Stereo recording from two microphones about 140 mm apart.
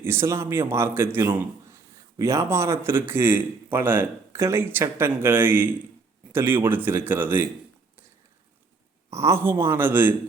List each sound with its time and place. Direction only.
0.0 s speech: 20° right (ahead or behind)
9.0 s speech: 20° right (ahead or behind)